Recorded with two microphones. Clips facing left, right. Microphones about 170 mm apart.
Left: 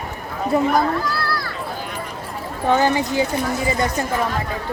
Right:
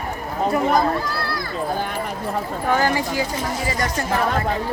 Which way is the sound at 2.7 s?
20° left (ahead or behind).